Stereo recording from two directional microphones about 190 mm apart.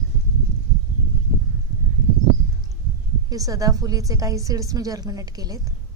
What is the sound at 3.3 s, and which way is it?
A woman's voice, 20° right (ahead or behind).